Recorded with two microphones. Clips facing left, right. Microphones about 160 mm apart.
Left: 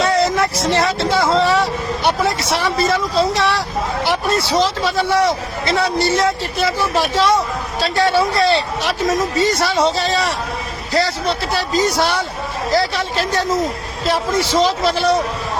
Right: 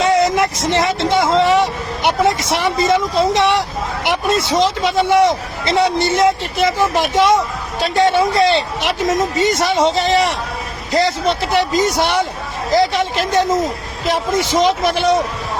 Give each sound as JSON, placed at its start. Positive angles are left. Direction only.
{"t": 0.0, "sound": "a man's voice", "side_deg": -20}